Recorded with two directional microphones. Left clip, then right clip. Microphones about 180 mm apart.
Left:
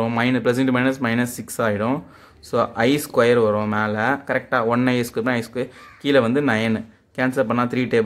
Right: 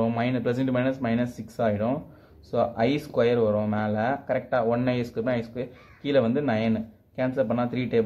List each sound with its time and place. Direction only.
0.0 s speech: 35° left (ahead or behind)